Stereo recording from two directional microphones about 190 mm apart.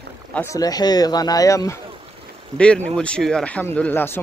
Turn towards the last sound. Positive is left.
turn(degrees=10)  # may be behind; listen again after turning